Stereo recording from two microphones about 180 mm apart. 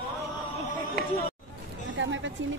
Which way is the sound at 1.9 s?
90° right.